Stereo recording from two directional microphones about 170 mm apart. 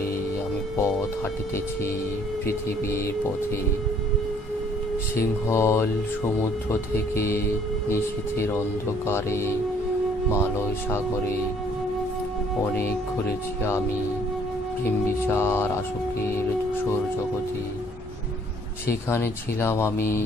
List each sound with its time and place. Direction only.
5.1 s speech: 15° left (ahead or behind)
9.0 s speech: 15° left (ahead or behind)
15.2 s speech: 15° left (ahead or behind)
18.9 s speech: 15° left (ahead or behind)